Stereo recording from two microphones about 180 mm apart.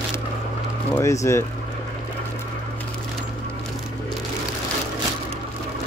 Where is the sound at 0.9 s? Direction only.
15° left (ahead or behind).